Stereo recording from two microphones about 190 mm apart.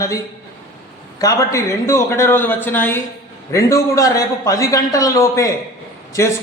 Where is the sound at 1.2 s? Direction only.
15° left (ahead or behind).